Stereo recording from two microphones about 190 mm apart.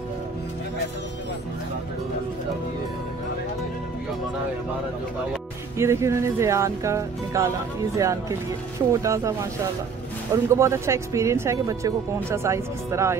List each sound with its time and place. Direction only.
5.8 s speech: 15° right (ahead or behind)